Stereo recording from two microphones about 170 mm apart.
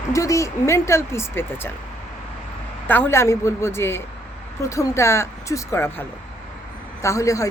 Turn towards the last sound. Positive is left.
turn(degrees=20)  # may be behind; listen again after turning